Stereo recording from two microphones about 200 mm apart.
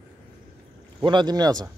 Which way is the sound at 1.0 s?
25° right (ahead or behind).